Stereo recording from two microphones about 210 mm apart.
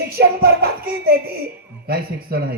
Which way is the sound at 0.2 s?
45° right (ahead or behind).